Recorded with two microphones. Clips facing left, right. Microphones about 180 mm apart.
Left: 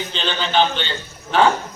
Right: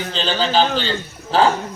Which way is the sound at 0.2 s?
35° right (ahead or behind).